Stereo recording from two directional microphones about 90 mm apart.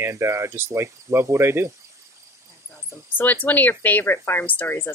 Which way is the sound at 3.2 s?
20° left (ahead or behind).